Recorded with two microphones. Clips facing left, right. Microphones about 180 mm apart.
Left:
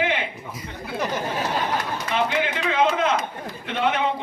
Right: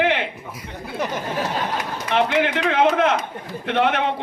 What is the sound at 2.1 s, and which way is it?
Speech, 65° right (ahead or behind).